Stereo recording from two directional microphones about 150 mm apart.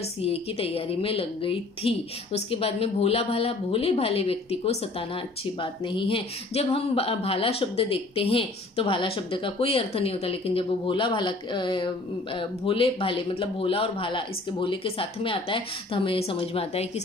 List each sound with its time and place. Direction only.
0.2 s a woman's voice: 40° left (ahead or behind)